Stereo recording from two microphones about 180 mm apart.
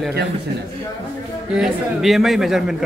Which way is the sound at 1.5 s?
5° right (ahead or behind).